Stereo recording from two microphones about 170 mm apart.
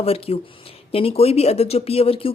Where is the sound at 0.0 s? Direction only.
35° left (ahead or behind).